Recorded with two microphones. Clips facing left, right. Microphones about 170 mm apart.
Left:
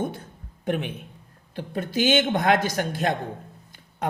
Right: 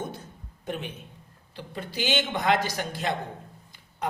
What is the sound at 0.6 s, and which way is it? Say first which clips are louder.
A man's voice: left 7 dB; 60° left (ahead or behind).